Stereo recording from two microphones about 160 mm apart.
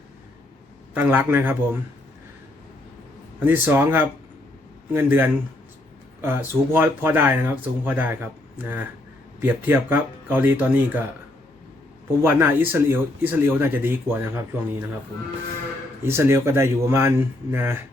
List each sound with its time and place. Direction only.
0.9 s speech: 10° right (ahead or behind)
3.4 s speech: 10° right (ahead or behind)
12.2 s speech: 15° right (ahead or behind)
16.0 s speech: 15° right (ahead or behind)